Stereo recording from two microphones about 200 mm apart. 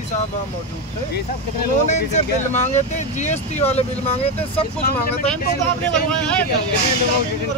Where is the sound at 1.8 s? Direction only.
35° left (ahead or behind).